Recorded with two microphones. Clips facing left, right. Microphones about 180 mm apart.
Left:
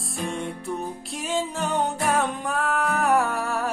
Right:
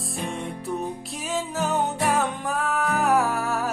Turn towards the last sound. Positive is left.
turn(degrees=0)  # may be behind; listen again after turning